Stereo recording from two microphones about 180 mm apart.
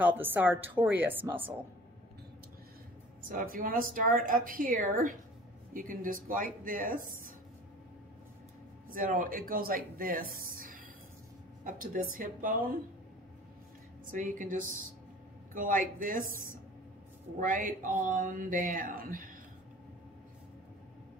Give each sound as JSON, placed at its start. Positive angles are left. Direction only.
{"t": 0.0, "sound": "a woman's voice", "side_deg": -10}
{"t": 3.3, "sound": "speech", "side_deg": -50}
{"t": 8.9, "sound": "speech", "side_deg": -50}
{"t": 14.1, "sound": "speech", "side_deg": -45}